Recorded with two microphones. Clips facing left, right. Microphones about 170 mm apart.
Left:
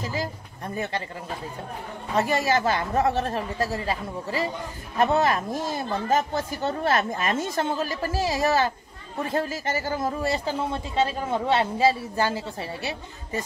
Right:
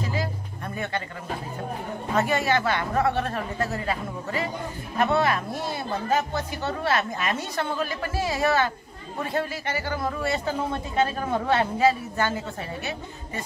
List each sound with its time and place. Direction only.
2.1 s a woman's voice: 35° left (ahead or behind)